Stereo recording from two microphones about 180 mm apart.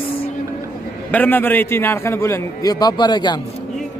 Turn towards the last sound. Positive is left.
turn(degrees=25)  # may be behind; listen again after turning